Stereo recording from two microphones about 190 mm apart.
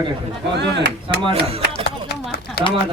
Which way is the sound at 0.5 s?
65° right (ahead or behind).